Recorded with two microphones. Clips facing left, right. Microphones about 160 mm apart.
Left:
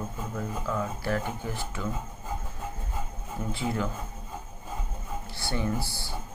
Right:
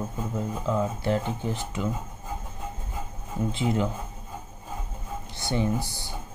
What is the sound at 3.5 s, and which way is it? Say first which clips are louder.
Speech: right 3 dB; 20° right (ahead or behind).